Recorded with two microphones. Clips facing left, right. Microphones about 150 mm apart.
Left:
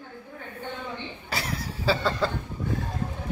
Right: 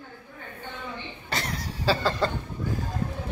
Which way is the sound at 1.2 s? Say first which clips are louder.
Even; 5° left (ahead or behind).